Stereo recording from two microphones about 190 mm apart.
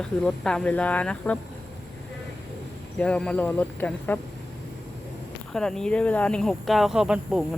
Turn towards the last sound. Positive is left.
turn(degrees=-5)  # may be behind; listen again after turning